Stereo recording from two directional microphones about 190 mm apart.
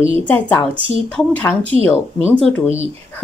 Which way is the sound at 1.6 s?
30° right (ahead or behind).